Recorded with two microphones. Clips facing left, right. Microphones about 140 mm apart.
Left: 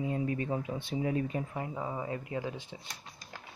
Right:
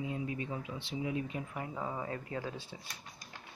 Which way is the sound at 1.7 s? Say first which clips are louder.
Left 1 dB; 15° left (ahead or behind).